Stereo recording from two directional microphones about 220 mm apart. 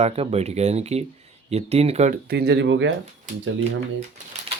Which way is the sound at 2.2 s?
45° right (ahead or behind).